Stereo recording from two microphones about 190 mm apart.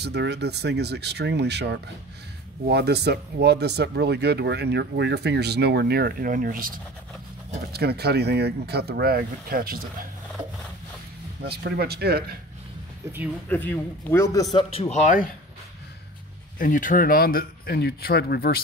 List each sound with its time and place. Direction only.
0.0 s speech: 60° right (ahead or behind)
7.7 s speech: 60° right (ahead or behind)
11.4 s speech: 55° right (ahead or behind)
13.5 s a man's voice: 10° left (ahead or behind); by 15.2 s 40° left (ahead or behind)
16.5 s speech: 45° left (ahead or behind)